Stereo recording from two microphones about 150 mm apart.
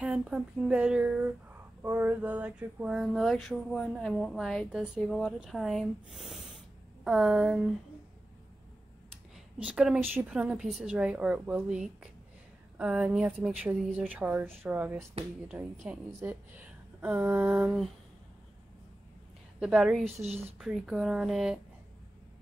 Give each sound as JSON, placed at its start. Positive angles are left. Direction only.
{"t": 0.0, "sound": "a woman's voice", "side_deg": -5}
{"t": 9.6, "sound": "a woman's voice", "side_deg": -5}
{"t": 19.6, "sound": "speech", "side_deg": -5}
{"t": 20.2, "sound": "speech", "side_deg": -45}
{"t": 20.5, "sound": "speech", "side_deg": -5}